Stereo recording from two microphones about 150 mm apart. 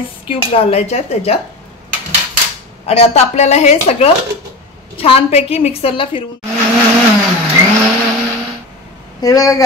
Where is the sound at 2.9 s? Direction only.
45° left (ahead or behind).